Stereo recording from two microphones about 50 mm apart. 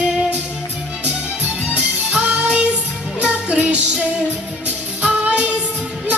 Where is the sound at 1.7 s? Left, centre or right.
Right.